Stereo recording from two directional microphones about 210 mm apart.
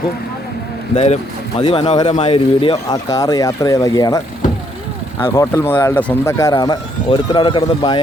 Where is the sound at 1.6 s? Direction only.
25° left (ahead or behind).